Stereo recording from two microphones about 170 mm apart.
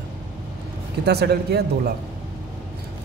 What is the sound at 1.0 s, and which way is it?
Speech, 70° right (ahead or behind).